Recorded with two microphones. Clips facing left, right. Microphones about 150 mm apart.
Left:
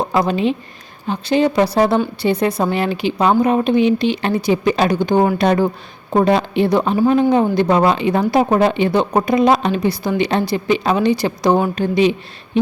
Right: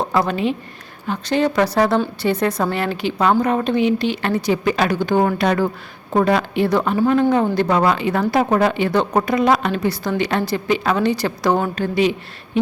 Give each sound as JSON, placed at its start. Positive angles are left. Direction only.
{"t": 0.0, "sound": "a woman's voice", "side_deg": 15}